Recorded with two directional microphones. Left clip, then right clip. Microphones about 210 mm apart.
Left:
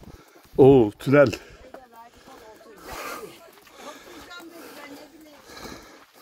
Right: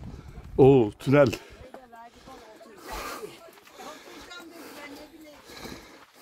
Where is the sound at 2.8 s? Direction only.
5° right (ahead or behind).